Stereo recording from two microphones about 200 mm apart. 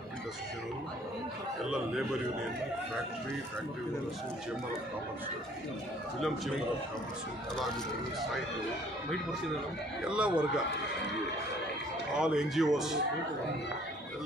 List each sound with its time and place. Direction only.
10.0 s speech: 5° right (ahead or behind)
12.2 s speech: 5° right (ahead or behind)